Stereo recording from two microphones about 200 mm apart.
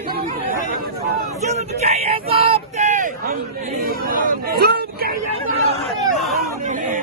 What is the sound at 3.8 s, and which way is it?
Chatter, 45° right (ahead or behind).